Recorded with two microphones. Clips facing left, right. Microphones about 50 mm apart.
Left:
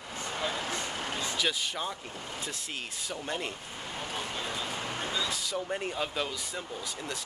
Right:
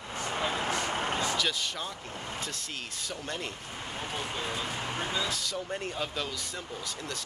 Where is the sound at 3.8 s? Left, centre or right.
Centre.